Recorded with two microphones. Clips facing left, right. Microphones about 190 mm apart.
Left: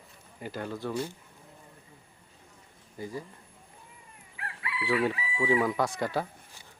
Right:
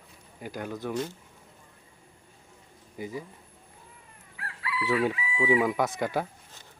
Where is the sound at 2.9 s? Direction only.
15° right (ahead or behind).